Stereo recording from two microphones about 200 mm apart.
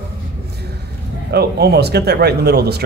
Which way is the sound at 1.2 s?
55° right (ahead or behind).